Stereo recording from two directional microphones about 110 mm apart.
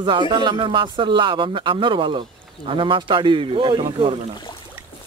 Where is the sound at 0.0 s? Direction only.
50° right (ahead or behind).